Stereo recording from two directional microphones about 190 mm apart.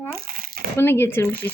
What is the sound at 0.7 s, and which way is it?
Speech, 10° left (ahead or behind).